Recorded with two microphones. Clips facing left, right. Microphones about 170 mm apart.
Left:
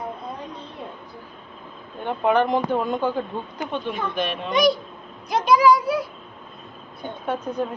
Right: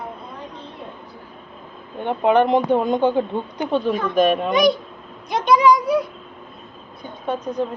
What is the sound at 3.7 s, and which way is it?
Speech, 40° right (ahead or behind).